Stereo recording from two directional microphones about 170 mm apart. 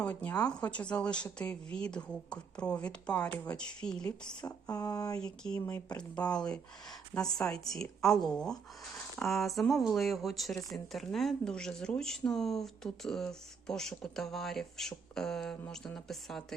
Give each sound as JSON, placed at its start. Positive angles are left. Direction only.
{"t": 0.0, "sound": "speech", "side_deg": 10}
{"t": 4.4, "sound": "speech", "side_deg": 20}
{"t": 5.2, "sound": "speech", "side_deg": 5}